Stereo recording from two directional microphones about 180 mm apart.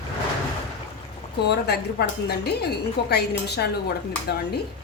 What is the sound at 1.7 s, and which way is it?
A woman's voice, 65° left (ahead or behind).